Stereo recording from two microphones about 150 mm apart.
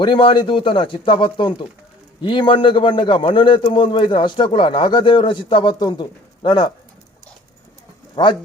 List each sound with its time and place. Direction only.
0.0 s a man's voice: 35° left (ahead or behind)
8.1 s speech: 30° left (ahead or behind)